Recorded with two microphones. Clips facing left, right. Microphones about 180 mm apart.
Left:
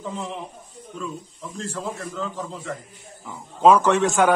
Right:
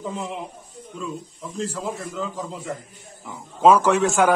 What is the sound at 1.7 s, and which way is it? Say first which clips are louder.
A man's voice: right 1 dB; 10° right (ahead or behind).